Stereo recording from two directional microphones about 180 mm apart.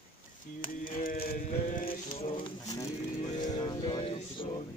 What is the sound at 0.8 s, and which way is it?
Music, 55° left (ahead or behind).